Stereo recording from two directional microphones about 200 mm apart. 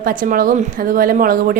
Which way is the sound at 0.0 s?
40° right (ahead or behind).